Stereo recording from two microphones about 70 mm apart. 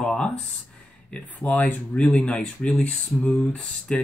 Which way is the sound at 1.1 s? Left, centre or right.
Left.